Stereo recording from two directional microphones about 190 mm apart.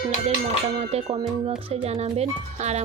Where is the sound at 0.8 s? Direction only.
35° right (ahead or behind).